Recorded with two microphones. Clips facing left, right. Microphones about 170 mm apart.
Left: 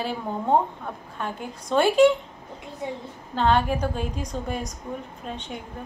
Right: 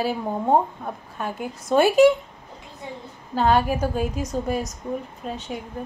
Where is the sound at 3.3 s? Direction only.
10° right (ahead or behind).